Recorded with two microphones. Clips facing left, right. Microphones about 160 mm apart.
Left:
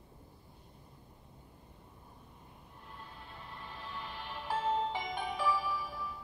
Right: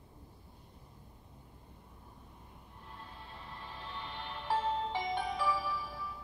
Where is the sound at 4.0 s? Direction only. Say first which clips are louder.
Even; 5° left (ahead or behind).